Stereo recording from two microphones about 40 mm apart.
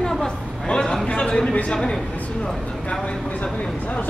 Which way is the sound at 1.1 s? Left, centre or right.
Left.